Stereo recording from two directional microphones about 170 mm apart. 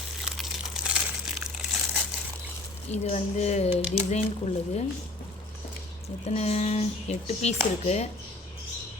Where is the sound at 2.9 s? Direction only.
40° left (ahead or behind).